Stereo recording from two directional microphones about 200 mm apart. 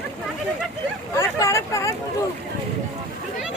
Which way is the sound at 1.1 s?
15° left (ahead or behind).